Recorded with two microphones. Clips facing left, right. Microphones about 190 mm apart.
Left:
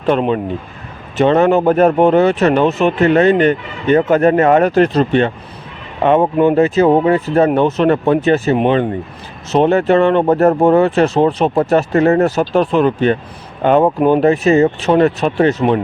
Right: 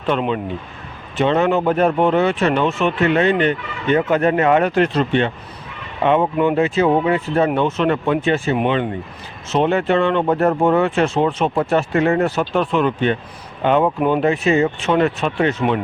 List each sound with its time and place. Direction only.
0.0 s speech: 40° left (ahead or behind)